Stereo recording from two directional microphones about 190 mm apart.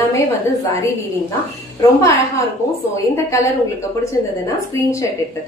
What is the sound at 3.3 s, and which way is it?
Speech, 15° left (ahead or behind).